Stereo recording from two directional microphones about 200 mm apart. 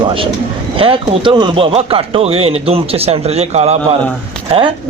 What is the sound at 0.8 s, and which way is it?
Speech, 25° right (ahead or behind).